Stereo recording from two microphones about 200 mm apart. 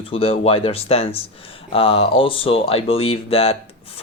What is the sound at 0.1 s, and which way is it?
Speech, 30° left (ahead or behind).